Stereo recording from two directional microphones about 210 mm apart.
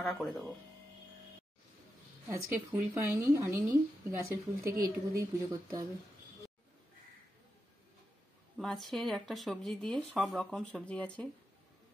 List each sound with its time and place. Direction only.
0.0 s speech: centre (ahead or behind)
2.2 s a woman's voice: 10° right (ahead or behind)
8.5 s speech: centre (ahead or behind)